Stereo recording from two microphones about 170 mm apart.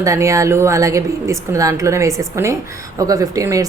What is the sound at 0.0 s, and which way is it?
A woman's voice, 20° right (ahead or behind).